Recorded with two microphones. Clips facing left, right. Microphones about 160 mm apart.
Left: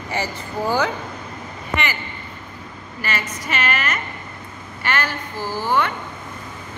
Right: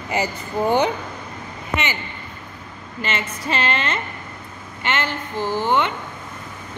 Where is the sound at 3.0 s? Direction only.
25° right (ahead or behind).